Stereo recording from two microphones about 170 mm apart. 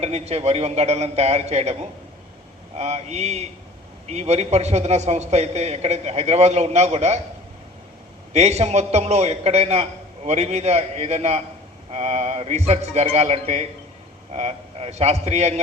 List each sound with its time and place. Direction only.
0.0 s a man's voice: 40° right (ahead or behind)
8.3 s a man's voice: 40° right (ahead or behind)